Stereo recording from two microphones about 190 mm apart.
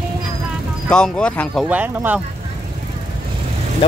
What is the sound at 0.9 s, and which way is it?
Speech, 5° left (ahead or behind).